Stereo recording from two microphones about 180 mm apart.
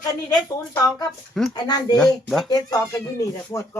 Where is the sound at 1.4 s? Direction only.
Centre (ahead or behind).